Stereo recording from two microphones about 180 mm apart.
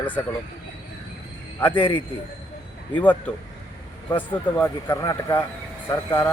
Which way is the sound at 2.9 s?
10° left (ahead or behind).